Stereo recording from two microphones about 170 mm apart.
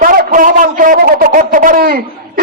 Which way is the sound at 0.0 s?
55° right (ahead or behind).